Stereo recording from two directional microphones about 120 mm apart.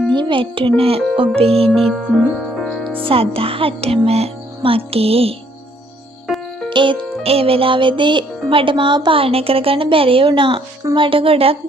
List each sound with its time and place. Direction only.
0.1 s a child's voice: 45° right (ahead or behind)
1.8 s speech: 5° left (ahead or behind)
3.0 s speech: 50° right (ahead or behind)
6.7 s speech: 45° right (ahead or behind)